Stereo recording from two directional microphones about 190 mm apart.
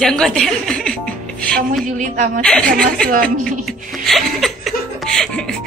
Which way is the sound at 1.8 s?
45° right (ahead or behind).